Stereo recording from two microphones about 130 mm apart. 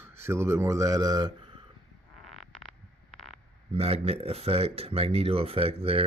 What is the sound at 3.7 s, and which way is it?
Speech, 50° right (ahead or behind).